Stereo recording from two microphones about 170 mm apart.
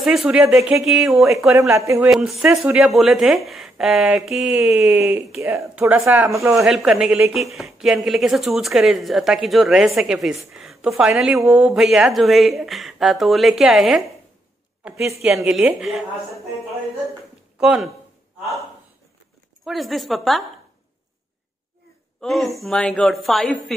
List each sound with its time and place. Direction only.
0.0 s speech: centre (ahead or behind)
1.5 s speech: 15° right (ahead or behind)
2.0 s speech: centre (ahead or behind); by 6.6 s 20° right (ahead or behind)
6.6 s speech: 5° right (ahead or behind)
15.2 s speech: centre (ahead or behind)
17.6 s speech: 5° right (ahead or behind)
19.6 s speech: centre (ahead or behind)
22.2 s speech: centre (ahead or behind)